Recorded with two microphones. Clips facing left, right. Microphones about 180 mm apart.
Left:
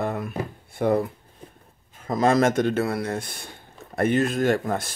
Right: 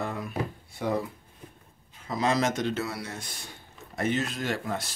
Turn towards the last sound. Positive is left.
turn(degrees=50)  # may be behind; listen again after turning